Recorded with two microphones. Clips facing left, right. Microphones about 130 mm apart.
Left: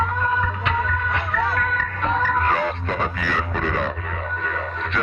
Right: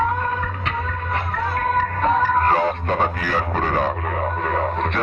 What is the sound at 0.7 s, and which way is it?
Music, 45° right (ahead or behind).